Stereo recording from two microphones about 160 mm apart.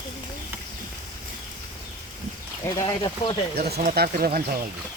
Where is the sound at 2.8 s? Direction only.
25° left (ahead or behind).